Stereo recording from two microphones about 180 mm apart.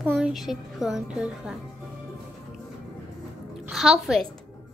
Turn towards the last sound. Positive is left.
turn(degrees=0)  # may be behind; listen again after turning